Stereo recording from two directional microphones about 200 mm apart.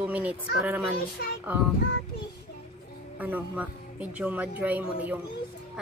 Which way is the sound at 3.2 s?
10° right (ahead or behind).